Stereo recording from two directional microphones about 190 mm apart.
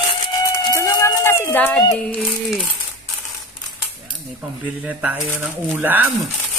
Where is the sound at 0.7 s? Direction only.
15° left (ahead or behind).